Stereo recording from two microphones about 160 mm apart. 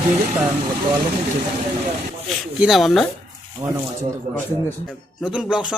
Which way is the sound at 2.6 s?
Centre (ahead or behind).